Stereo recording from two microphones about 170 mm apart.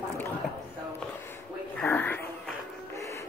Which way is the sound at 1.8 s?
10° left (ahead or behind).